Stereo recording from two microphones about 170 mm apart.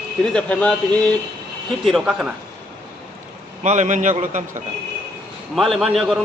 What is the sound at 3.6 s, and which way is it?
A man's voice, 45° right (ahead or behind).